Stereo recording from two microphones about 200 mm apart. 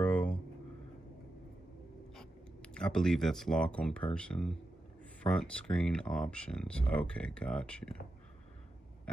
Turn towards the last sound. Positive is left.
turn(degrees=5)  # may be behind; listen again after turning